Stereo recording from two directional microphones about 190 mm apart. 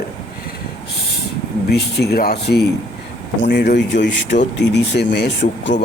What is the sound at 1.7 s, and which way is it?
Speech, 55° left (ahead or behind).